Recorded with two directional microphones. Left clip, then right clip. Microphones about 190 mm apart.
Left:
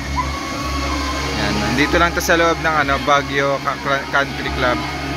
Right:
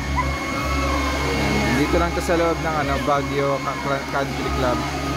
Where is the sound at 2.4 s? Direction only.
15° left (ahead or behind).